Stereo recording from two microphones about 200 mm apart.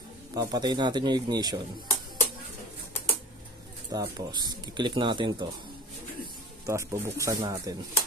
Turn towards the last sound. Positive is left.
turn(degrees=-20)  # may be behind; listen again after turning